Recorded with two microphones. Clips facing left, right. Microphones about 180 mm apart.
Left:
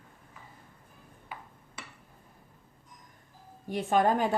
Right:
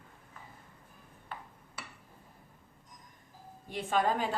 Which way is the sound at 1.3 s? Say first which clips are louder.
Even; 10° left (ahead or behind).